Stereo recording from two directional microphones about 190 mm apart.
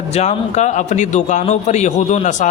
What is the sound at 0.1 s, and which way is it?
A man's voice, 35° left (ahead or behind).